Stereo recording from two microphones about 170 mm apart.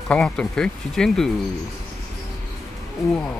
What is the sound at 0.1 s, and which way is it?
Speech, 5° left (ahead or behind).